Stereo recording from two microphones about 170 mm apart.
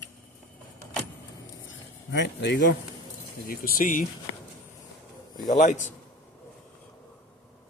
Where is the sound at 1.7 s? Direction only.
90° left.